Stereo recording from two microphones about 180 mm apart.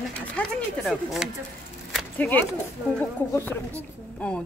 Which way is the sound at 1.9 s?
5° left (ahead or behind).